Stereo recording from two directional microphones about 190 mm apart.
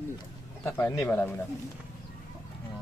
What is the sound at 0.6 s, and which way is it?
Speech, 10° left (ahead or behind).